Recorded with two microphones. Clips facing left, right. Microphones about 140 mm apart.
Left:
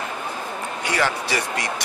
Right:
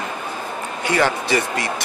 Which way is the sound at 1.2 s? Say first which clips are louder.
Right 4 dB; 15° left (ahead or behind).